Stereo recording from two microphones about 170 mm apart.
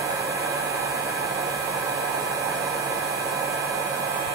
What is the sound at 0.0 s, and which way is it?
Hair dryer, 20° right (ahead or behind).